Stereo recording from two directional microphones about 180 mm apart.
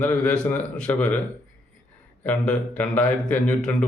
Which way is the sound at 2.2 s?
5° left (ahead or behind).